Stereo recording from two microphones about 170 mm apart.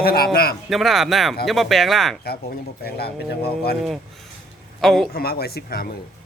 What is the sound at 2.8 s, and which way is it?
Speech, 70° left (ahead or behind).